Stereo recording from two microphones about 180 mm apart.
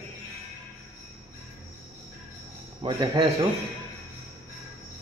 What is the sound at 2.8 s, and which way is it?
Speech, 30° right (ahead or behind).